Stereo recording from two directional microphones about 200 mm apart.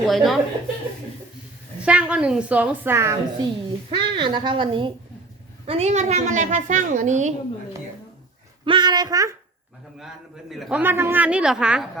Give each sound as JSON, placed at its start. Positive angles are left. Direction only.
{"t": 0.0, "sound": "a man's voice", "side_deg": 0}
{"t": 1.8, "sound": "a woman's voice", "side_deg": -5}
{"t": 8.6, "sound": "a woman's voice", "side_deg": -25}
{"t": 10.5, "sound": "a man's voice", "side_deg": -5}